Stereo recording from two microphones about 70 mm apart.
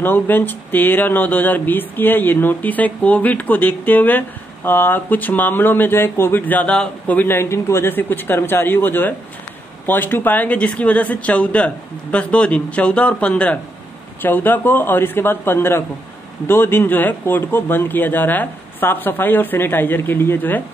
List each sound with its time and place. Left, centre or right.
0.0 s speech: left
7.2 s speech: left